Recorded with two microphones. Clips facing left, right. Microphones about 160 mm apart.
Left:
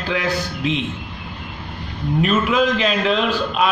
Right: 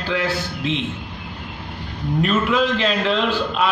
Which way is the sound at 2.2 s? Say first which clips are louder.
Left 1 dB; 10° left (ahead or behind).